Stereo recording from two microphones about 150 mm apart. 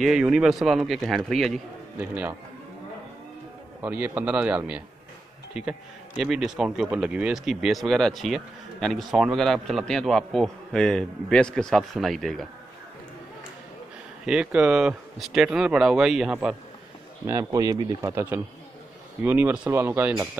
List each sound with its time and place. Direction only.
0.0 s a man's voice: 5° right (ahead or behind)
2.0 s a man's voice: 10° right (ahead or behind)
3.8 s a man's voice: 10° right (ahead or behind)
14.2 s a man's voice: 5° right (ahead or behind)
17.3 s a man's voice: 20° right (ahead or behind)